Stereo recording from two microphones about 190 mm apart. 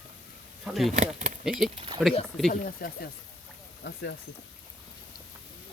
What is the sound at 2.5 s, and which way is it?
Speech, 50° left (ahead or behind).